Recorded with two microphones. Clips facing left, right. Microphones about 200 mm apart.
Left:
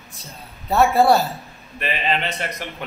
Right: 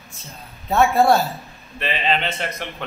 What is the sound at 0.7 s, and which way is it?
A man's voice, centre (ahead or behind).